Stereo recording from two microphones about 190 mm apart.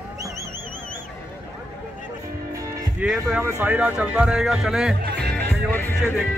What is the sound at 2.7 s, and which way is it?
Speech, 5° right (ahead or behind).